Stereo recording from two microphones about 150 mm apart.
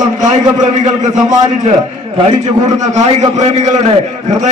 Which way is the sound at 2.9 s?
50° right (ahead or behind).